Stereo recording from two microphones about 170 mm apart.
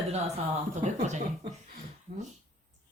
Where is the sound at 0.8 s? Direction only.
45° right (ahead or behind).